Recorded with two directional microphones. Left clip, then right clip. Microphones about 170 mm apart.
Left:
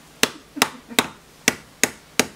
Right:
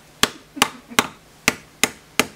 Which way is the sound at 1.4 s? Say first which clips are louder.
Right 1 dB; 5° right (ahead or behind).